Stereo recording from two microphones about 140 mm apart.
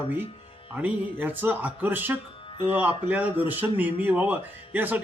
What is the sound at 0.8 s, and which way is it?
A man's voice, 10° right (ahead or behind).